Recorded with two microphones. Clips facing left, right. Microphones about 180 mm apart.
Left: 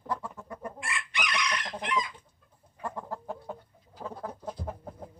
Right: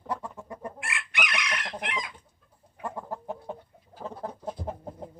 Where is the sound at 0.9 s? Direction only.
60° right (ahead or behind).